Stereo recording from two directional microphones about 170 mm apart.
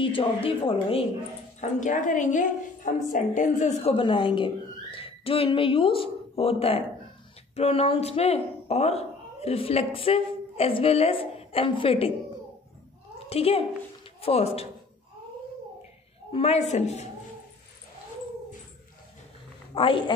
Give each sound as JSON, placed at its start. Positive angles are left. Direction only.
{"t": 0.0, "sound": "speech", "side_deg": 30}
{"t": 1.6, "sound": "a woman's voice", "side_deg": 50}
{"t": 13.3, "sound": "speech", "side_deg": 35}
{"t": 16.3, "sound": "speech", "side_deg": 40}
{"t": 19.7, "sound": "a woman's voice", "side_deg": 30}